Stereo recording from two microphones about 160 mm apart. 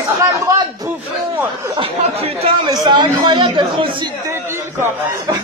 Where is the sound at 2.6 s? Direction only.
25° right (ahead or behind).